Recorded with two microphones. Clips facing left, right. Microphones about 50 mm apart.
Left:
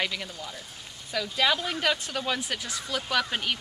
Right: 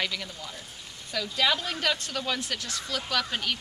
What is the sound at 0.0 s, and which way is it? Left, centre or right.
Speech, centre.